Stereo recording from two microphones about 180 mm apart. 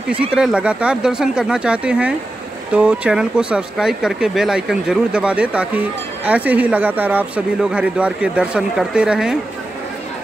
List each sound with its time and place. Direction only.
0.3 s speech: 5° right (ahead or behind)